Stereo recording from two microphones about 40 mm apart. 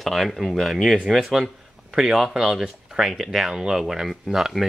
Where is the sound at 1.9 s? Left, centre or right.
Centre.